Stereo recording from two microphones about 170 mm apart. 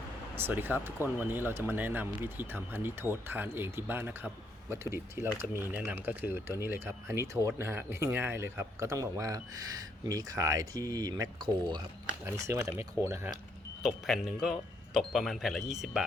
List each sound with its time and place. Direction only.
0.3 s speech: 10° right (ahead or behind)
13.8 s speech: centre (ahead or behind)